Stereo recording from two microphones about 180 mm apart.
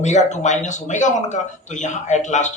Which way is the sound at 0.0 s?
40° left (ahead or behind).